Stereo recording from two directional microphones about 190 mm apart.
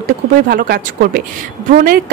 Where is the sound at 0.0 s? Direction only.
50° right (ahead or behind).